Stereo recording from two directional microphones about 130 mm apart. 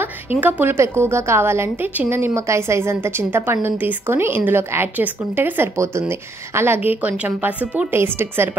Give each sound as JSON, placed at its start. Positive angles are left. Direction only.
{"t": 0.0, "sound": "a woman's voice", "side_deg": -15}